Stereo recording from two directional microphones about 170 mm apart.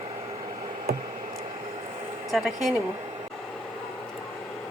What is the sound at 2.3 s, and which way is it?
Speech, centre (ahead or behind).